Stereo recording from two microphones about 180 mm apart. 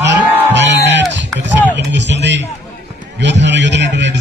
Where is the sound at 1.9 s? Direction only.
75° right (ahead or behind).